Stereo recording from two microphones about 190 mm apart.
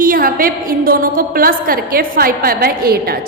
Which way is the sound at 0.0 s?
50° right (ahead or behind).